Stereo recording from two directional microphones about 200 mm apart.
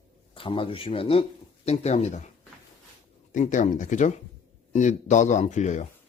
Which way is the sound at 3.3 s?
40° left (ahead or behind).